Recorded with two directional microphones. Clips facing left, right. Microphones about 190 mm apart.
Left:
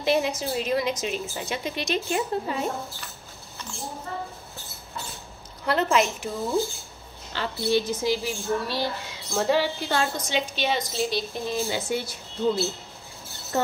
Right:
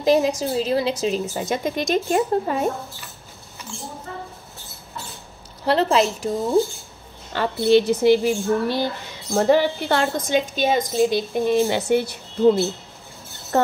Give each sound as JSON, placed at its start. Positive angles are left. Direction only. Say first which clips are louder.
{"t": 0.0, "sound": "a woman's voice", "louder": "right 6 dB", "side_deg": -40}
{"t": 5.7, "sound": "a woman's voice", "louder": "right 4 dB", "side_deg": -30}
{"t": 7.3, "sound": "a woman's voice", "louder": "right 8 dB", "side_deg": -65}